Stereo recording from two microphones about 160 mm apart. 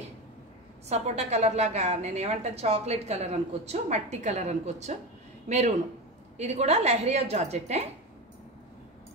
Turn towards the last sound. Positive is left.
turn(degrees=-40)  # may be behind; listen again after turning